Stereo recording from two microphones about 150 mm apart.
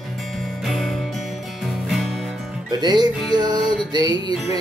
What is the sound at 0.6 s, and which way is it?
Music, centre (ahead or behind).